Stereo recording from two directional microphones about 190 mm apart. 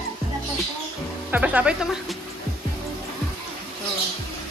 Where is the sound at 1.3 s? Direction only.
10° right (ahead or behind).